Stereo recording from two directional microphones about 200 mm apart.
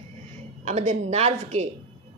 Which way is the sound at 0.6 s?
35° right (ahead or behind).